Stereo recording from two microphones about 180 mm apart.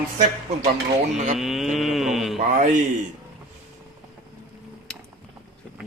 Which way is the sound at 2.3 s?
45° right (ahead or behind).